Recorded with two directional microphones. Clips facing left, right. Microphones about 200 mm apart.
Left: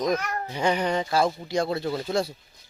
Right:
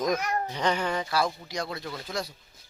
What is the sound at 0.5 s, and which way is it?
Speech, 15° left (ahead or behind).